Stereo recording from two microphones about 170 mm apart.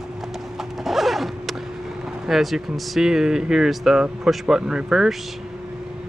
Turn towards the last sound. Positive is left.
turn(degrees=-5)  # may be behind; listen again after turning